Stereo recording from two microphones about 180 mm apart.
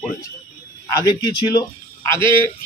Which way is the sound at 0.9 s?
20° left (ahead or behind).